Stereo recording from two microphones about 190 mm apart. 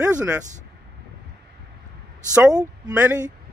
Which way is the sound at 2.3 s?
5° right (ahead or behind).